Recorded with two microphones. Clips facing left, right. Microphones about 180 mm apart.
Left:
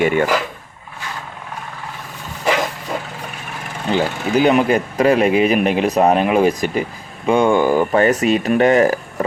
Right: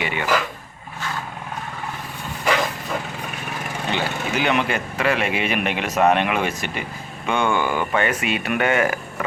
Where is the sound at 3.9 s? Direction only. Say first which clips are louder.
Left 8 dB; 40° left (ahead or behind).